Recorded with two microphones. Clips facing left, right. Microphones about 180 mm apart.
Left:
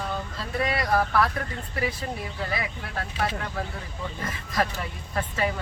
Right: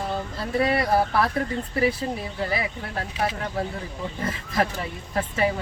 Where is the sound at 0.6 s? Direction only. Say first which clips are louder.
Right 3 dB; 30° right (ahead or behind).